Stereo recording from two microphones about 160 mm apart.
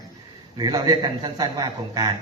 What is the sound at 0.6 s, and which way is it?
A man's voice, 25° right (ahead or behind).